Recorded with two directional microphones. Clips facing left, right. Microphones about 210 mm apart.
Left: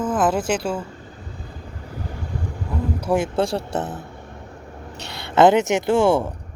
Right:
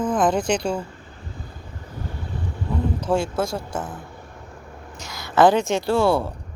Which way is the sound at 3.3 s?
30° left (ahead or behind).